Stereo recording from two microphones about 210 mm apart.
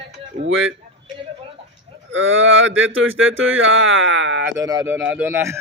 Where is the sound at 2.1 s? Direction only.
65° right (ahead or behind).